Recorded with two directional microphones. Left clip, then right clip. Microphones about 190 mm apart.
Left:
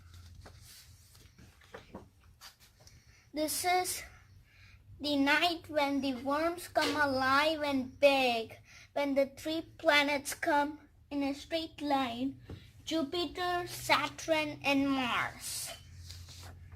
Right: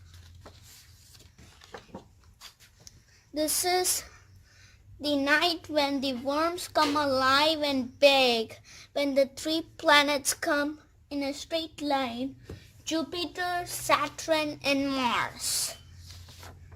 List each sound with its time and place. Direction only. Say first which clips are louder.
3.6 s a woman's voice: right 2 dB; 55° right (ahead or behind)
4.9 s a woman's voice: right 4 dB; 50° right (ahead or behind)
12.9 s speech: right 3 dB; 45° right (ahead or behind)